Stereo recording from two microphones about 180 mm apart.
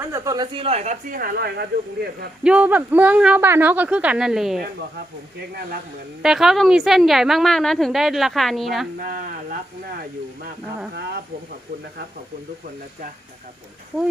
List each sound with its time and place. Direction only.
0.0 s speech: 15° right (ahead or behind); by 1.6 s 60° right (ahead or behind)
2.4 s speech: 5° right (ahead or behind)
6.2 s a woman's voice: 5° right (ahead or behind)
9.0 s speech: 50° right (ahead or behind)
10.9 s speech: 65° right (ahead or behind)